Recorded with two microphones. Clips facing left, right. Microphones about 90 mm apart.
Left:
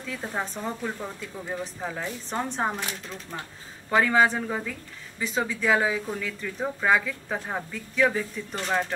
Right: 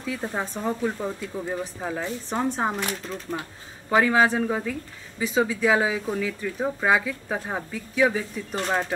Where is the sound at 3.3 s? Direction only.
35° right (ahead or behind).